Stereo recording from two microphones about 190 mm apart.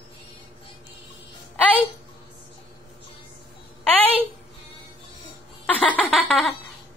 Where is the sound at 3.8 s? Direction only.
10° left (ahead or behind).